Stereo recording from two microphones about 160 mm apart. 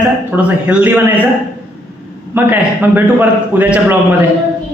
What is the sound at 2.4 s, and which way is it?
A man's voice, 10° right (ahead or behind).